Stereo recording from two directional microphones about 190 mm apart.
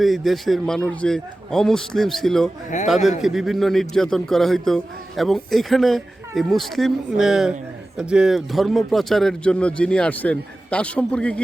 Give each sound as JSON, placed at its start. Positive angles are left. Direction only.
{"t": 0.0, "sound": "a man's voice", "side_deg": 0}
{"t": 2.7, "sound": "a man's voice", "side_deg": 40}
{"t": 3.2, "sound": "a man's voice", "side_deg": 0}